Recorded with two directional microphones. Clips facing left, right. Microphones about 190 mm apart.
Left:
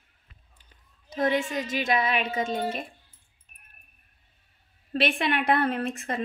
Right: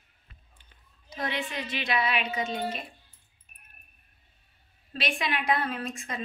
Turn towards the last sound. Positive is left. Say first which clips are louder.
# left 6 dB
turn(degrees=60)  # may be behind; listen again after turning